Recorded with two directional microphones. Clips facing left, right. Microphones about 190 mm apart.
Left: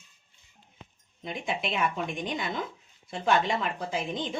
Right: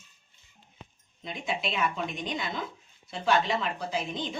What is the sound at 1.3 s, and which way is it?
Speech, 50° left (ahead or behind).